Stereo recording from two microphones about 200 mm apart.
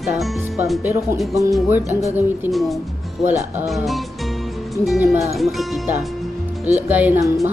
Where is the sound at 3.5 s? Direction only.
Centre (ahead or behind).